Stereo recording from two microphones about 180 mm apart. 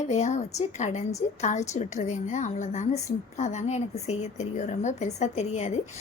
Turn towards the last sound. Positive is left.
turn(degrees=35)  # may be behind; listen again after turning